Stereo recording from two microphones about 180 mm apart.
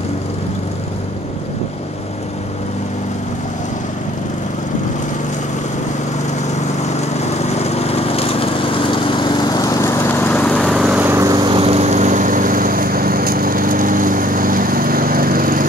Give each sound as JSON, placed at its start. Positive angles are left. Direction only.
{"t": 7.5, "sound": "lawn mower", "side_deg": 35}